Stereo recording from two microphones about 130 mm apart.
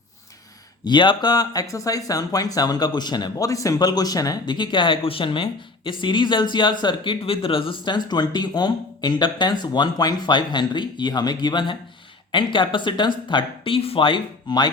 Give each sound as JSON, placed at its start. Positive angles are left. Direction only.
{"t": 0.9, "sound": "speech", "side_deg": 35}